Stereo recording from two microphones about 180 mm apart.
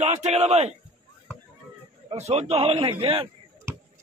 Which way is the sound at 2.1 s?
35° right (ahead or behind).